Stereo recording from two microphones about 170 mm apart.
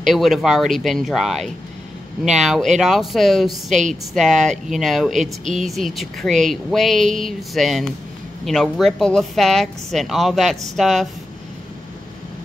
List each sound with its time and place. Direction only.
0.0 s speech: centre (ahead or behind)
5.4 s speech: 50° right (ahead or behind)
5.7 s speech: centre (ahead or behind)